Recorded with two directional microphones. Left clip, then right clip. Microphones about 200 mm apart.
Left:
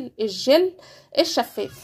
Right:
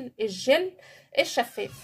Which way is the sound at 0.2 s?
25° left (ahead or behind).